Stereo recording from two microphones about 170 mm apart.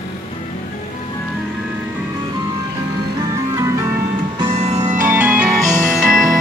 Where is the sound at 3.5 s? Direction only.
20° right (ahead or behind).